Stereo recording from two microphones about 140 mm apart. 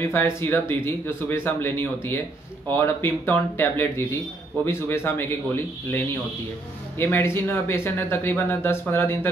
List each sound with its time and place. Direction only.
0.1 s speech: 15° left (ahead or behind)